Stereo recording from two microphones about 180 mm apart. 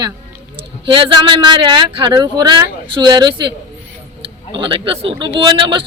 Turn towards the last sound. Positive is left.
turn(degrees=-25)  # may be behind; listen again after turning